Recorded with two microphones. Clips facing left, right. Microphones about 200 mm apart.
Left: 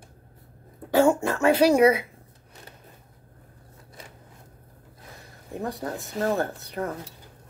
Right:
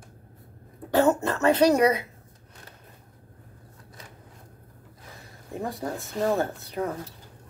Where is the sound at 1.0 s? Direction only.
10° left (ahead or behind).